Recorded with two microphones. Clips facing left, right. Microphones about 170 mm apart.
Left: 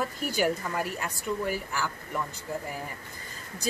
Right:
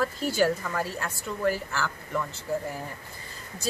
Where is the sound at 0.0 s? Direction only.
15° left (ahead or behind).